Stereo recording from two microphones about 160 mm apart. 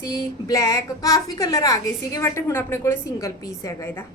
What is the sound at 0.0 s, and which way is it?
A woman's voice, 20° left (ahead or behind).